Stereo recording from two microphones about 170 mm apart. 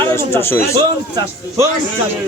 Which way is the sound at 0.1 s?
15° left (ahead or behind).